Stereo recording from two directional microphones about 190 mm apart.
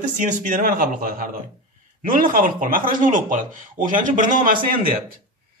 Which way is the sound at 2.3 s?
45° right (ahead or behind).